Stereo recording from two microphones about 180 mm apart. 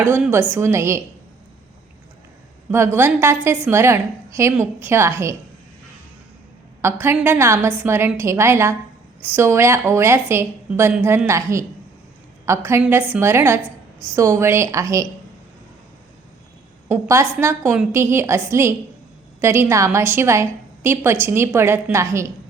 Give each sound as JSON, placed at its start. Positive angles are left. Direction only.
{"t": 0.0, "sound": "a woman's voice", "side_deg": -15}
{"t": 2.6, "sound": "a woman's voice", "side_deg": -15}
{"t": 6.8, "sound": "a woman's voice", "side_deg": -15}
{"t": 16.9, "sound": "a woman's voice", "side_deg": -15}